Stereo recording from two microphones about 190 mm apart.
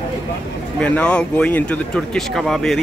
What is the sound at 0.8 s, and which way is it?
Speech, 5° left (ahead or behind).